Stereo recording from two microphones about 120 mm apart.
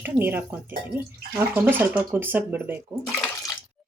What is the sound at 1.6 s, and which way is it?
Speech, 15° right (ahead or behind).